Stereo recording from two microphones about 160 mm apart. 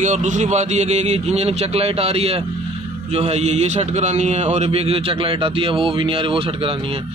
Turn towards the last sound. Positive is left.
turn(degrees=-35)  # may be behind; listen again after turning